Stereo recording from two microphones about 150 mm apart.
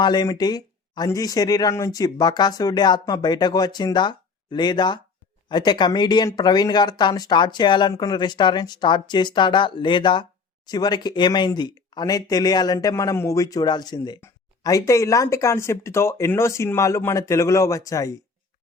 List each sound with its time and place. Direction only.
0.0 s speech: 30° left (ahead or behind)